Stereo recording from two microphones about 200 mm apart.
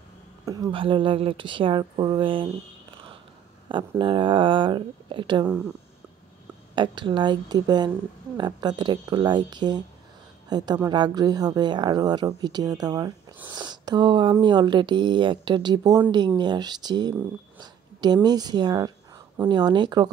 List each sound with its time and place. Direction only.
0.5 s speech: 20° right (ahead or behind)
4.0 s speech: 25° right (ahead or behind)
6.7 s speech: 25° right (ahead or behind)